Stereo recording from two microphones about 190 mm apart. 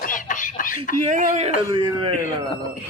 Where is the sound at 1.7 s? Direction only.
25° right (ahead or behind).